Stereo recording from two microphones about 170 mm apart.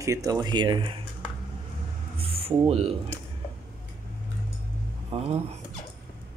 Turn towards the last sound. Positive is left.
turn(degrees=-40)  # may be behind; listen again after turning